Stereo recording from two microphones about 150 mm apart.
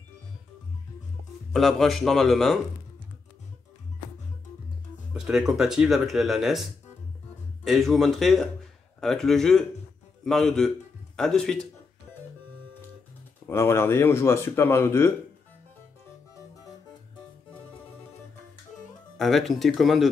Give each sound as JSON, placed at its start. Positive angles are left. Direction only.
{"t": 1.5, "sound": "speech", "side_deg": 0}
{"t": 5.1, "sound": "speech", "side_deg": -5}
{"t": 13.5, "sound": "speech", "side_deg": 15}
{"t": 19.1, "sound": "speech", "side_deg": 0}